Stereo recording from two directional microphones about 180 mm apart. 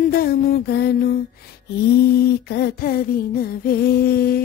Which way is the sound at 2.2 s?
65° left (ahead or behind).